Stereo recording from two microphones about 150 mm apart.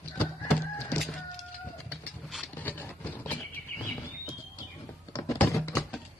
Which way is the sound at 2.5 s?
10° left (ahead or behind).